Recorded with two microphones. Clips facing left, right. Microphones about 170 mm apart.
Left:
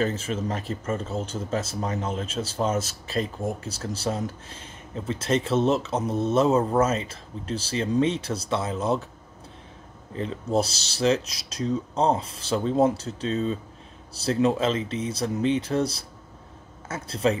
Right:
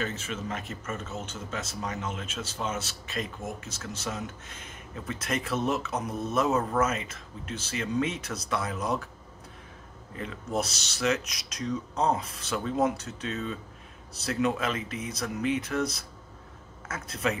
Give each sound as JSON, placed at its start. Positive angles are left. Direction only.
{"t": 0.0, "sound": "speech", "side_deg": 35}
{"t": 10.1, "sound": "speech", "side_deg": 30}